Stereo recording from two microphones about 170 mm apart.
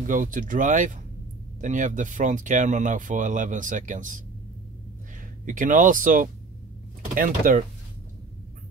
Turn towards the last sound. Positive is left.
turn(degrees=-50)  # may be behind; listen again after turning